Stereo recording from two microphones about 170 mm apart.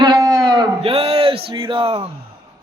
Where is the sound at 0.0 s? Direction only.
25° right (ahead or behind).